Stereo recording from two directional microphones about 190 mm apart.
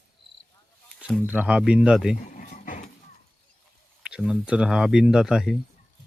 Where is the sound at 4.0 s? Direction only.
5° right (ahead or behind).